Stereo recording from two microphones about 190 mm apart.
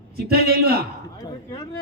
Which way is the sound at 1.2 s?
20° left (ahead or behind).